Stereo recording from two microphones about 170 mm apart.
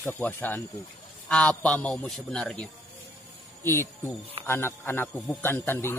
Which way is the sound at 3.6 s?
15° left (ahead or behind).